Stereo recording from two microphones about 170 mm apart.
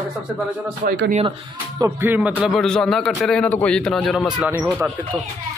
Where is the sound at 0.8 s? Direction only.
65° right (ahead or behind).